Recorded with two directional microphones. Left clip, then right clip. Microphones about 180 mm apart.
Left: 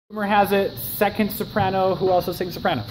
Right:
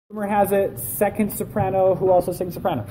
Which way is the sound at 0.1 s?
Centre (ahead or behind).